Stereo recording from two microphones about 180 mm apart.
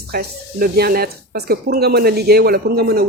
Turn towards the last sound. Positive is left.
turn(degrees=-60)  # may be behind; listen again after turning